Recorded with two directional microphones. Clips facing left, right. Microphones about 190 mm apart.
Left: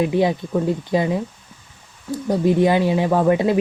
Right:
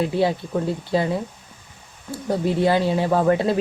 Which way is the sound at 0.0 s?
15° left (ahead or behind).